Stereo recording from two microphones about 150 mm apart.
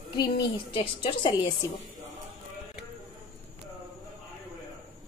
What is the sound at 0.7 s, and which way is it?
Speech, 35° left (ahead or behind).